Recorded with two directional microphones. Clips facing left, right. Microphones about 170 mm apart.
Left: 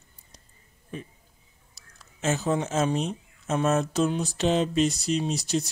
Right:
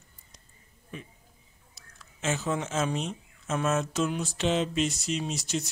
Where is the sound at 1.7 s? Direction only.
40° left (ahead or behind).